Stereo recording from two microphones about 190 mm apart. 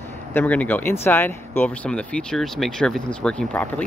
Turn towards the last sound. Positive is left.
turn(degrees=10)  # may be behind; listen again after turning